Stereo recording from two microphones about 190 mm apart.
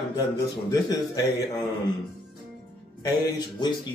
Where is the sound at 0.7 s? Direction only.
20° left (ahead or behind).